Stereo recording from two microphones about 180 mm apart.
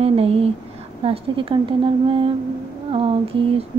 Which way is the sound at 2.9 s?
30° right (ahead or behind).